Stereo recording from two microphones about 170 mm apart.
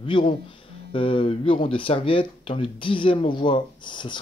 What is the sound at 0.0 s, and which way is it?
Speech, 30° left (ahead or behind).